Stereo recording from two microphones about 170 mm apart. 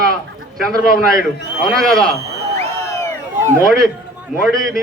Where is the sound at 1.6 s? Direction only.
Centre (ahead or behind).